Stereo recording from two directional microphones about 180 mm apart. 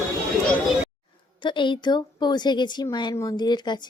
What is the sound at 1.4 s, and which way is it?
A woman's voice, 25° left (ahead or behind).